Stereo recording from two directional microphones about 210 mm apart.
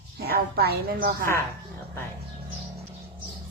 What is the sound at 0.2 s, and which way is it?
A woman's voice, 50° right (ahead or behind).